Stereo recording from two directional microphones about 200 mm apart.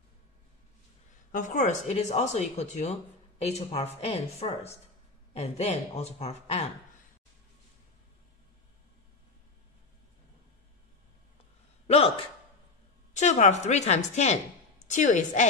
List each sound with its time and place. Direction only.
1.3 s speech: 35° left (ahead or behind)
13.1 s speech: 35° left (ahead or behind)